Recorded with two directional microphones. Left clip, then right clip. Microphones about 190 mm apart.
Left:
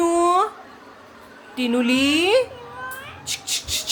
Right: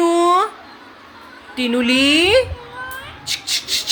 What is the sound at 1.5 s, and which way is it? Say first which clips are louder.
Speech: right 4 dB; 5° left (ahead or behind).